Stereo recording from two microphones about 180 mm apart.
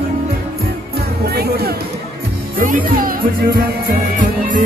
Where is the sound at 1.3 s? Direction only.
60° right (ahead or behind).